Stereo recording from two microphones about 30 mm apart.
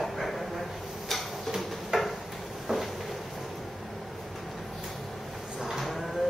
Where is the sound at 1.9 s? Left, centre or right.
Right.